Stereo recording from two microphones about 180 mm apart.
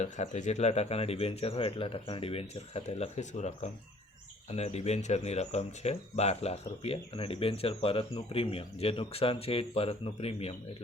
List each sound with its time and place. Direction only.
0.0 s speech: 40° left (ahead or behind)